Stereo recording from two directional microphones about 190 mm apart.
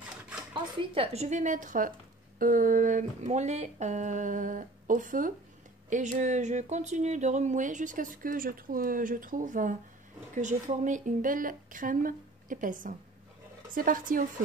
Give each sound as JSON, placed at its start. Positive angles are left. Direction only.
{"t": 0.9, "sound": "a woman's voice", "side_deg": -30}